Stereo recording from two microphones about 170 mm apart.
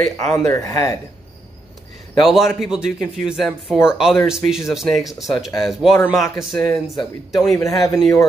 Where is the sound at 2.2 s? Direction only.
Centre (ahead or behind).